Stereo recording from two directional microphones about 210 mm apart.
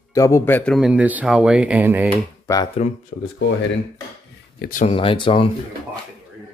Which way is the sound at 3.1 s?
65° left (ahead or behind).